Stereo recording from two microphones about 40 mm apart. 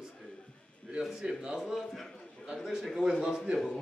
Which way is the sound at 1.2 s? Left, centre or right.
Right.